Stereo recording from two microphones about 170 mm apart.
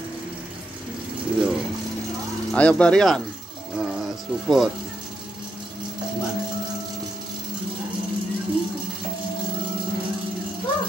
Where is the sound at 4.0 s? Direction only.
Centre (ahead or behind).